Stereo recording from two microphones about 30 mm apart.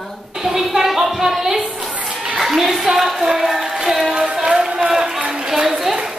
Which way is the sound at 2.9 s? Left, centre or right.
Centre.